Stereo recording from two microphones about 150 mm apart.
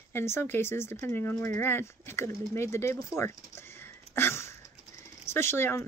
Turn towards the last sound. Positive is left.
turn(degrees=15)  # may be behind; listen again after turning